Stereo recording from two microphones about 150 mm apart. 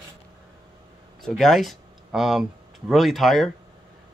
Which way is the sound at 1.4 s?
Centre (ahead or behind).